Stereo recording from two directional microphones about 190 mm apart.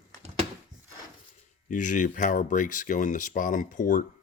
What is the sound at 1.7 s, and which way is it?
Speech, 40° left (ahead or behind).